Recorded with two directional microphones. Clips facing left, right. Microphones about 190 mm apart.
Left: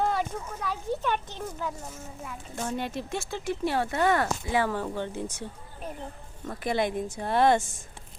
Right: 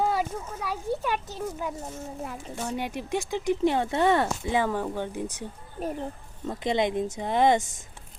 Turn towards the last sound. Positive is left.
turn(degrees=-15)  # may be behind; listen again after turning